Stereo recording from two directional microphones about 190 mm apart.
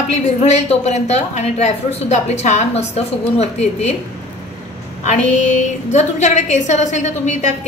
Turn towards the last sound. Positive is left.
turn(degrees=40)  # may be behind; listen again after turning